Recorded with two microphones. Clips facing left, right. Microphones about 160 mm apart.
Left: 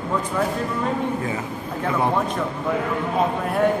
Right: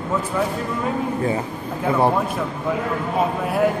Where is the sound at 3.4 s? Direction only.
5° right (ahead or behind).